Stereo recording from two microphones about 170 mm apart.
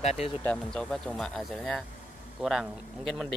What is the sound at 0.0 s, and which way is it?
Speech, 40° left (ahead or behind).